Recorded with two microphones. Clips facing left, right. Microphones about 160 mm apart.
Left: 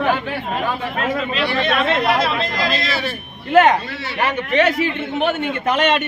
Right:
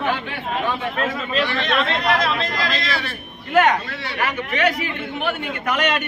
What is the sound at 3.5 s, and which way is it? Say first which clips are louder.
A man's voice: left 4 dB; 25° left (ahead or behind).